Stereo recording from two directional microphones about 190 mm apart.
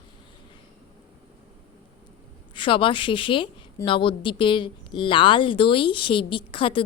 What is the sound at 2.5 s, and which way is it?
Speech, 25° left (ahead or behind).